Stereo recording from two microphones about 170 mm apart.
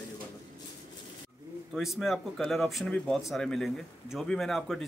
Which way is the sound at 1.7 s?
Centre (ahead or behind).